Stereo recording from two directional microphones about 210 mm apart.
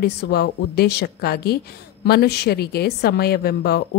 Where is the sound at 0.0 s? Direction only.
50° left (ahead or behind).